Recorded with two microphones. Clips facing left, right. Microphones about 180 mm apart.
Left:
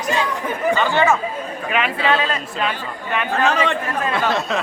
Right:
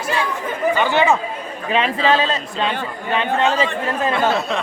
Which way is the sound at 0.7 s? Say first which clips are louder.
Right 1 dB; 15° right (ahead or behind).